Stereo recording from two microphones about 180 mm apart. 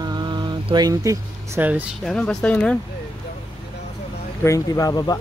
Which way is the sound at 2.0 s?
5° left (ahead or behind).